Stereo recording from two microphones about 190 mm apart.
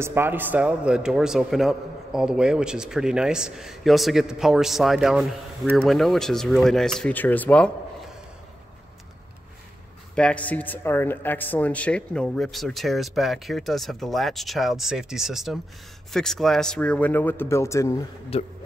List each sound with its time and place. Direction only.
0.0 s speech: 10° right (ahead or behind)
10.1 s a man's voice: 5° left (ahead or behind)
18.3 s a man's voice: 30° left (ahead or behind)